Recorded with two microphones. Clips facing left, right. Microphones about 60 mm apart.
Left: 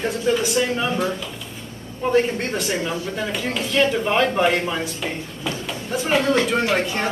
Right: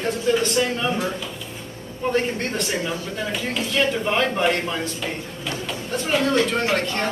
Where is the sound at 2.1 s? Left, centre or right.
Centre.